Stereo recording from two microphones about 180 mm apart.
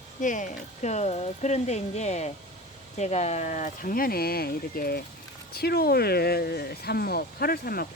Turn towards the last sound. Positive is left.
turn(degrees=55)  # may be behind; listen again after turning